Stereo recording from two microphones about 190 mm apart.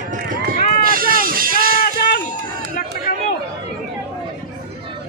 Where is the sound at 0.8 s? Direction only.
50° right (ahead or behind).